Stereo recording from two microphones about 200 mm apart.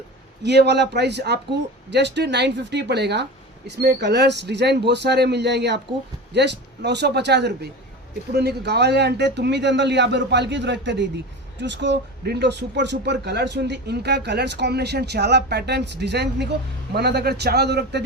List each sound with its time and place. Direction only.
0.4 s a man's voice: 60° right (ahead or behind)